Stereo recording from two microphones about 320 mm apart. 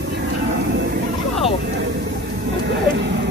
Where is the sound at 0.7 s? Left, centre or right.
Right.